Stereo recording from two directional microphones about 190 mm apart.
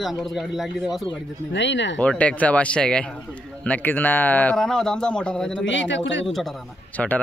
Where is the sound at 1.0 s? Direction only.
70° left (ahead or behind).